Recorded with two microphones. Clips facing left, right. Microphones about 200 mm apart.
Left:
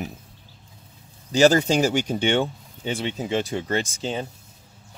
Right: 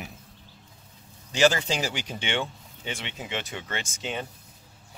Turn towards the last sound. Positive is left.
turn(degrees=35)  # may be behind; listen again after turning